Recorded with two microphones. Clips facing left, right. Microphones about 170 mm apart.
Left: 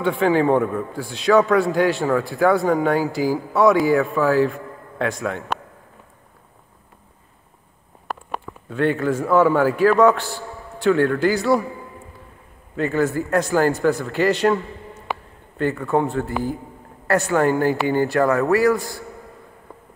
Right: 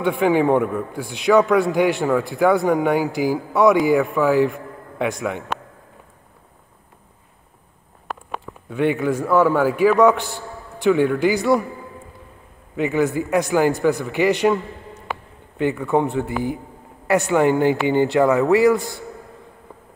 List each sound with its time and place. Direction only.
0.0 s a man's voice: 15° right (ahead or behind)
8.6 s a man's voice: 10° right (ahead or behind)
12.7 s a man's voice: 15° right (ahead or behind)
15.5 s a man's voice: 15° right (ahead or behind)